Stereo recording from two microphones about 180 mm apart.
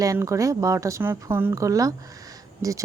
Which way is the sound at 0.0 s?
20° right (ahead or behind).